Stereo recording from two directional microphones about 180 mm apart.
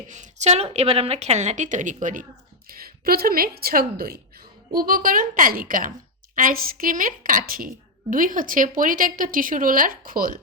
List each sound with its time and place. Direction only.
0.1 s a woman's voice: 40° right (ahead or behind)
2.6 s speech: 55° right (ahead or behind)